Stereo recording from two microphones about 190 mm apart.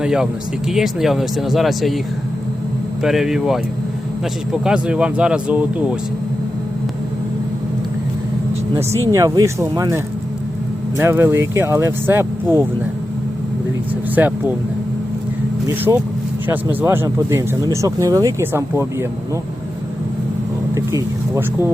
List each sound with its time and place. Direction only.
0.0 s speech: 5° right (ahead or behind)
3.0 s speech: centre (ahead or behind)
9.1 s speech: 15° right (ahead or behind)
14.2 s speech: 10° right (ahead or behind)
15.6 s speech: 15° right (ahead or behind)
20.7 s speech: 15° right (ahead or behind)